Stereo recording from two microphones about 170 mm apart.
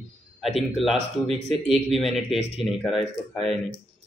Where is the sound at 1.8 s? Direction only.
Centre (ahead or behind).